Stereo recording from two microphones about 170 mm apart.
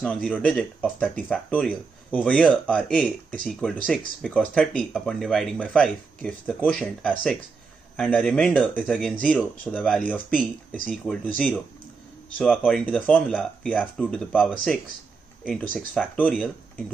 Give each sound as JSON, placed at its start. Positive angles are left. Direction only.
{"t": 0.0, "sound": "speech", "side_deg": 5}
{"t": 16.2, "sound": "speech", "side_deg": 10}